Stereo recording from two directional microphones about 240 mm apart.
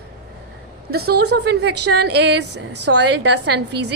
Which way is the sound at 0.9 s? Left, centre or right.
Right.